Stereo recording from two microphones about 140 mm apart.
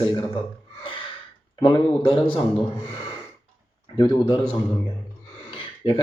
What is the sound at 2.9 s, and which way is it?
Gasp, 45° left (ahead or behind).